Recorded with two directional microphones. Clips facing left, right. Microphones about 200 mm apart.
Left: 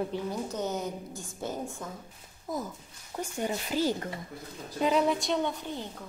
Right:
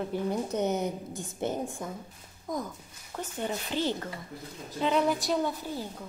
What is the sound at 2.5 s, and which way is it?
Speech, 5° left (ahead or behind).